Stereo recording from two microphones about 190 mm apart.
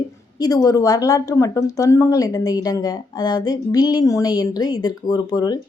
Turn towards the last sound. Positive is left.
turn(degrees=20)  # may be behind; listen again after turning